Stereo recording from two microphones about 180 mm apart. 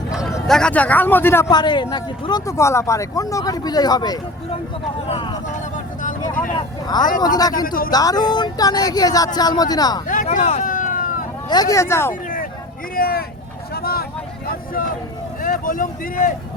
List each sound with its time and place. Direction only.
0.1 s a sound: 5° right (ahead or behind)
0.4 s speech: 5° left (ahead or behind); by 5.4 s 30° left (ahead or behind)
5.7 s vehicle: 45° left (ahead or behind)
6.8 s speech: 25° left (ahead or behind)
7.5 s speech: 50° left (ahead or behind)
7.9 s speech: 20° left (ahead or behind)
10.1 s vehicle: 45° left (ahead or behind)
11.4 s speech: 20° left (ahead or behind)
13.0 s speech: 55° left (ahead or behind)
13.7 s vehicle: 60° left (ahead or behind)
15.4 s speech: 50° left (ahead or behind)